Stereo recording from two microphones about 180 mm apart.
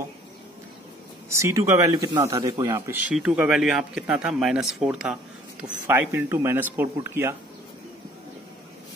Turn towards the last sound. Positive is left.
turn(degrees=-15)  # may be behind; listen again after turning